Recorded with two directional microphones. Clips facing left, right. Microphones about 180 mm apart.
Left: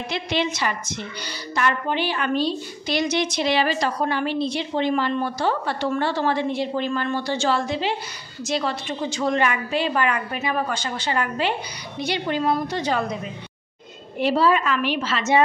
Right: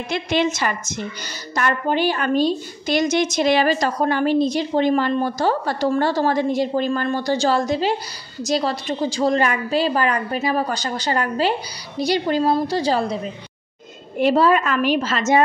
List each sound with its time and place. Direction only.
0.1 s a woman's voice: 45° right (ahead or behind); by 13.2 s 30° right (ahead or behind)
14.2 s a woman's voice: 50° right (ahead or behind)